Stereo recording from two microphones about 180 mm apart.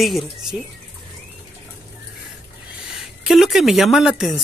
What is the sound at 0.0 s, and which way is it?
Speech, centre (ahead or behind).